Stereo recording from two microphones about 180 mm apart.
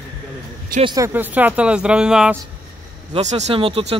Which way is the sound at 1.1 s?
10° right (ahead or behind).